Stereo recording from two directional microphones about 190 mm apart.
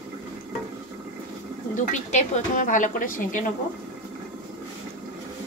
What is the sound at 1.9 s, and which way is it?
Speech, 40° left (ahead or behind).